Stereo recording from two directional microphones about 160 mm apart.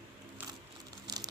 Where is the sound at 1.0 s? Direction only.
25° right (ahead or behind).